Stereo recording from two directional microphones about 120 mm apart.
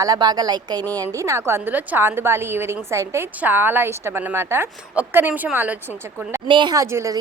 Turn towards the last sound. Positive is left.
turn(degrees=-25)  # may be behind; listen again after turning